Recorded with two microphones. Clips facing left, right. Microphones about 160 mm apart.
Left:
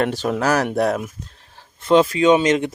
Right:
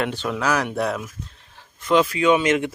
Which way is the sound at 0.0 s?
40° left (ahead or behind).